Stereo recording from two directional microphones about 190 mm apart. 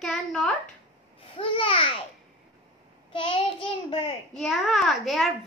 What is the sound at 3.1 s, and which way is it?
Child singing, 25° left (ahead or behind).